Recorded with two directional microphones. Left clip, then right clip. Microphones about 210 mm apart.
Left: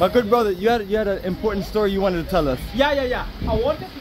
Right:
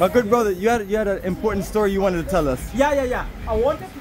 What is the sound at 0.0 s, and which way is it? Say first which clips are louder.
A man's voice: even; centre (ahead or behind).